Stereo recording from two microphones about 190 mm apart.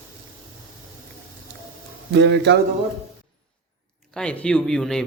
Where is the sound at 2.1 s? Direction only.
65° right (ahead or behind).